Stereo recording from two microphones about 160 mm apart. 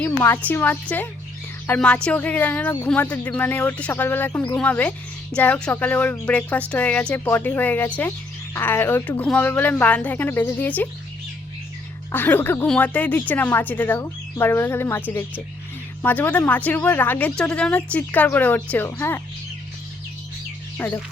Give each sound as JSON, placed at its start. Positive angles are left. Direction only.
{"t": 0.0, "sound": "speech", "side_deg": 15}
{"t": 12.1, "sound": "speech", "side_deg": 10}
{"t": 20.7, "sound": "speech", "side_deg": 10}